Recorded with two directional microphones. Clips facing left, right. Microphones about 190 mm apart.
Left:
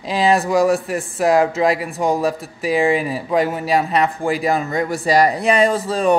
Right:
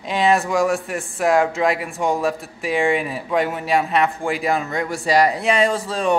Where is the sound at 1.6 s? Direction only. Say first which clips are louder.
Left 3 dB; 35° left (ahead or behind).